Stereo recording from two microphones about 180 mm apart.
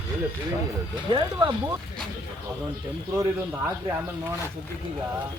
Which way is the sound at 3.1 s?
15° right (ahead or behind).